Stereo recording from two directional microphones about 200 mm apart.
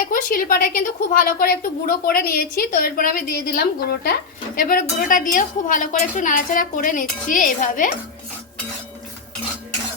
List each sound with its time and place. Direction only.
0.1 s a woman's voice: 45° left (ahead or behind)